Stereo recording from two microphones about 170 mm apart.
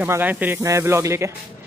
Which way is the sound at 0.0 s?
10° right (ahead or behind).